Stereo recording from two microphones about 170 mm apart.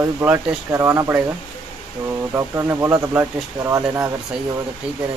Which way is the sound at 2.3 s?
15° right (ahead or behind).